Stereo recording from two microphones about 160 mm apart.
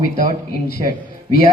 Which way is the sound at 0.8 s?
40° right (ahead or behind).